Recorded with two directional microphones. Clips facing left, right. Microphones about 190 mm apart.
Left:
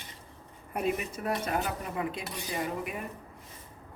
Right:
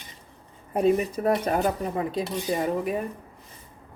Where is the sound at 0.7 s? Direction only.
30° right (ahead or behind).